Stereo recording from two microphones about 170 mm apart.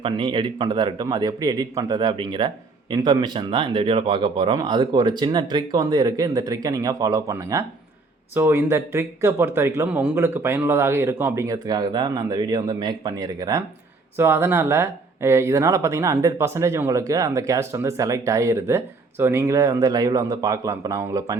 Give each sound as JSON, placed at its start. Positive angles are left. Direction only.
{"t": 0.0, "sound": "speech", "side_deg": -30}